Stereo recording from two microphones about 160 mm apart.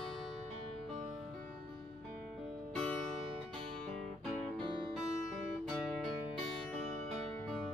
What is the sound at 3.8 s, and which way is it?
Music, centre (ahead or behind).